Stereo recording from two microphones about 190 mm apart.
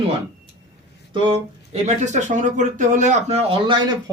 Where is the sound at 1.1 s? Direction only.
30° right (ahead or behind).